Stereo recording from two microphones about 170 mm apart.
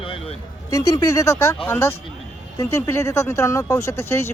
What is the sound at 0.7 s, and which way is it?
Speech, 20° left (ahead or behind).